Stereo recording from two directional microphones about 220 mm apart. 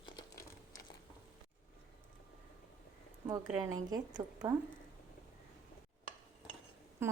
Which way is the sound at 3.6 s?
15° right (ahead or behind).